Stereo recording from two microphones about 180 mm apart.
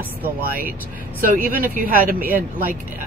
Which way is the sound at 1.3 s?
50° right (ahead or behind).